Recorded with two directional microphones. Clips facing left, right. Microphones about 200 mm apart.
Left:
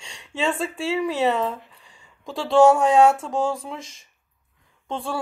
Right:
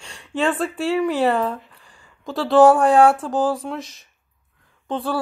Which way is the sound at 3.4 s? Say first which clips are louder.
Right 4 dB; 30° left (ahead or behind).